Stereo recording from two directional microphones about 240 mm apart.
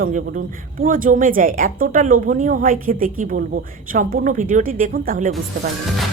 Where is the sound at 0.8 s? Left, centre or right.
Right.